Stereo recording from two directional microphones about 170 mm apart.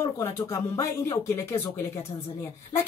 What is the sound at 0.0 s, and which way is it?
A woman's voice, 15° left (ahead or behind).